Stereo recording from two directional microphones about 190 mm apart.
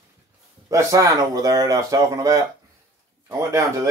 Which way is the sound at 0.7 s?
15° right (ahead or behind).